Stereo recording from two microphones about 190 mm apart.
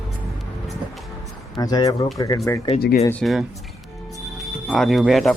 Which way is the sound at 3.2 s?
Centre (ahead or behind).